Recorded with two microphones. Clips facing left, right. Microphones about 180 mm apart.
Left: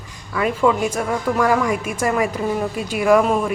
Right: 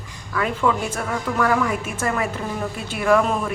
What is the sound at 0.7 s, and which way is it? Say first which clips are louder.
A woman's voice: left 4 dB; 10° left (ahead or behind).